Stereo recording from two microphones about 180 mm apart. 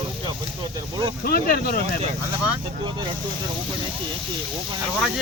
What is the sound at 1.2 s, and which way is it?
Speech, 55° left (ahead or behind).